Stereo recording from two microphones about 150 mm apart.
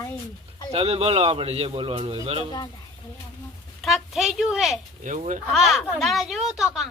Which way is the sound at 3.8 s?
Centre (ahead or behind).